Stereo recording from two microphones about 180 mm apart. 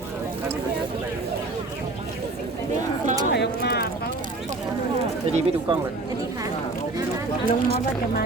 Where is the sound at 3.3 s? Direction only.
65° left (ahead or behind).